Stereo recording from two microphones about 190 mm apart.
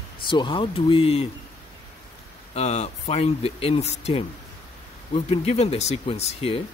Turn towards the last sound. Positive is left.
turn(degrees=30)  # may be behind; listen again after turning